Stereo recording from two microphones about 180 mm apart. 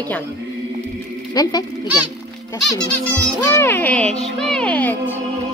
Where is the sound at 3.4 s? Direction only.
15° left (ahead or behind).